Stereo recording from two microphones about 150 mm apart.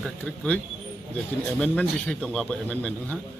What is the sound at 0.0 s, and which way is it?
Speech, 5° left (ahead or behind).